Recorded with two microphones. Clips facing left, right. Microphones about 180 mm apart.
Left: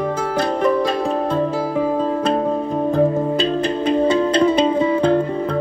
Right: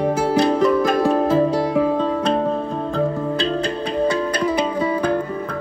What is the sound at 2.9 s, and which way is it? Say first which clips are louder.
Music: left 4 dB; 20° left (ahead or behind).